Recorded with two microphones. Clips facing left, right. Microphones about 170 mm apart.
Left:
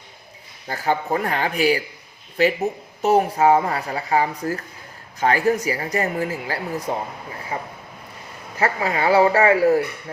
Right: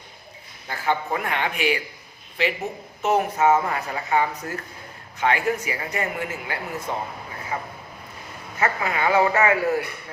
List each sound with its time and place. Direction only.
0.7 s speech: 40° left (ahead or behind)
8.5 s speech: 35° left (ahead or behind)